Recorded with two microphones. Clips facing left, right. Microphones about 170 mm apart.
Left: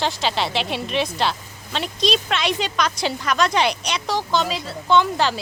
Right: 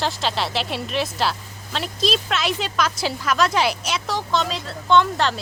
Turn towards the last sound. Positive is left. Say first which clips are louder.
# even
turn(degrees=0)  # may be behind; listen again after turning